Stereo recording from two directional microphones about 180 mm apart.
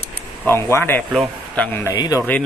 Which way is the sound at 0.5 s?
15° left (ahead or behind).